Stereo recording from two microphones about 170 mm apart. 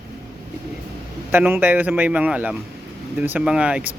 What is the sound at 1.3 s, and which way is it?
Speech, 10° right (ahead or behind).